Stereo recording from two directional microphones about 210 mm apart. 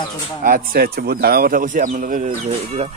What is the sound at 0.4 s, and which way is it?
Speech, 40° right (ahead or behind).